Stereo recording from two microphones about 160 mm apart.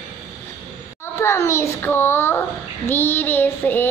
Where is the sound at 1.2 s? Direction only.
15° left (ahead or behind).